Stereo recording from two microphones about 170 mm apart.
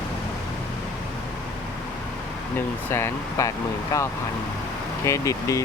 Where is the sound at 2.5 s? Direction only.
15° left (ahead or behind).